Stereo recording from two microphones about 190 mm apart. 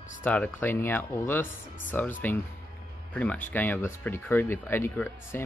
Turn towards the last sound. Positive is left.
turn(degrees=10)  # may be behind; listen again after turning